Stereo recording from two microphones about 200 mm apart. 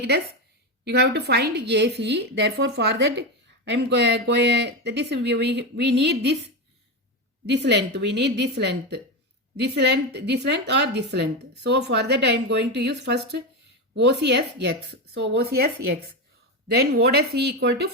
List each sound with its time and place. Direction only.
0.9 s speech: 55° right (ahead or behind)
7.4 s speech: 60° right (ahead or behind)